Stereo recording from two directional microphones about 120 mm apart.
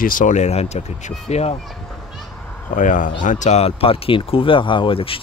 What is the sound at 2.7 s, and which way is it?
Speech, 90° left.